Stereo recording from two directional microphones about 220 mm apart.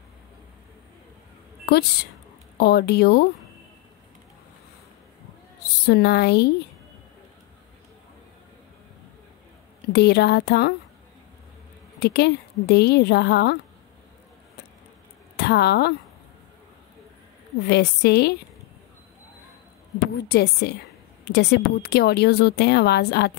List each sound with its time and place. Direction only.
2.5 s speech: 45° left (ahead or behind)
5.9 s speech: 45° left (ahead or behind)
9.9 s speech: 50° left (ahead or behind)
12.0 s speech: 45° left (ahead or behind)
15.3 s speech: 50° left (ahead or behind)
17.6 s speech: 50° left (ahead or behind)
20.2 s speech: 50° left (ahead or behind)